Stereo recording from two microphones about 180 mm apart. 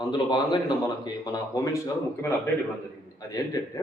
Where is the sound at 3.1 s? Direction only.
20° left (ahead or behind).